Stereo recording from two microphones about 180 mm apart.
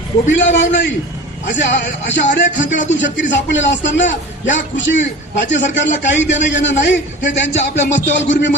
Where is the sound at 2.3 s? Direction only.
85° left.